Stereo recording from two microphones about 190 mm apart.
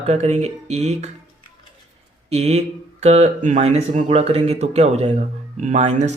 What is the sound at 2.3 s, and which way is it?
Speech, 35° right (ahead or behind).